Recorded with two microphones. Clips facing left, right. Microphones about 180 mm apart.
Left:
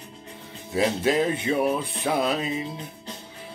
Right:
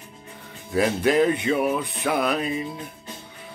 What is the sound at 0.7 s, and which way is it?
Male singing, 25° left (ahead or behind).